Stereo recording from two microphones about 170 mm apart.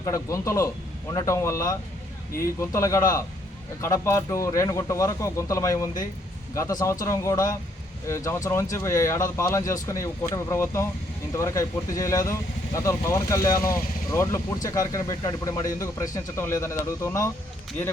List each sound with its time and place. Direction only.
0.0 s speech: 20° left (ahead or behind)